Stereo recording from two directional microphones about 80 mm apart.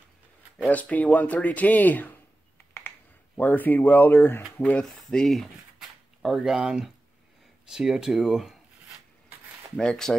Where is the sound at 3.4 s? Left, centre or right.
Left.